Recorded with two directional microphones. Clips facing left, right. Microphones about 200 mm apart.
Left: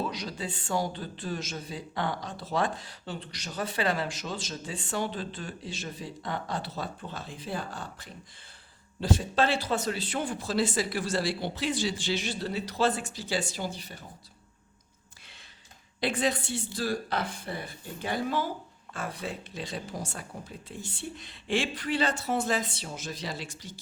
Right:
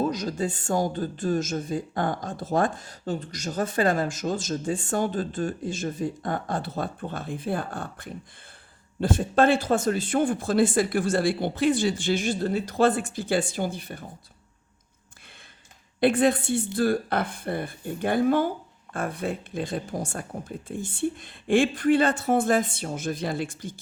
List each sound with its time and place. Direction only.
0.0 s speech: 45° right (ahead or behind)
16.0 s speech: 55° right (ahead or behind)